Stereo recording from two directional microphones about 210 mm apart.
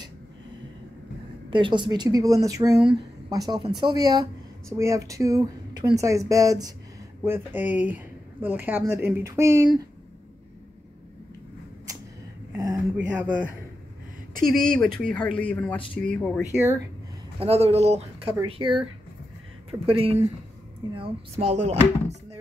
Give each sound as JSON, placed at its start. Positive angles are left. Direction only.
{"t": 1.5, "sound": "a woman's voice", "side_deg": -20}
{"t": 12.5, "sound": "speech", "side_deg": -10}
{"t": 14.3, "sound": "speech", "side_deg": -40}
{"t": 15.0, "sound": "speech", "side_deg": 5}
{"t": 17.4, "sound": "speech", "side_deg": -30}
{"t": 19.9, "sound": "speech", "side_deg": -25}